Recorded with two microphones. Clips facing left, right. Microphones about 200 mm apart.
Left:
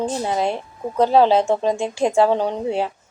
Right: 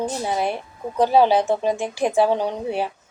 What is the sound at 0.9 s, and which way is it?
Speech, 10° right (ahead or behind).